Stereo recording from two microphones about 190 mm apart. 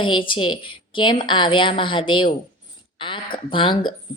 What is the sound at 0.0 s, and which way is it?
Speech, 25° left (ahead or behind).